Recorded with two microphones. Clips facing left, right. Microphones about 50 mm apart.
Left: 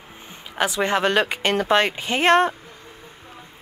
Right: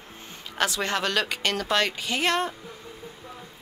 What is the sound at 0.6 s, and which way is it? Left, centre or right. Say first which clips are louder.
A woman's voice: left 5 dB; centre.